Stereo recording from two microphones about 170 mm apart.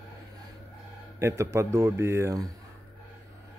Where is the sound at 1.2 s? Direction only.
15° right (ahead or behind).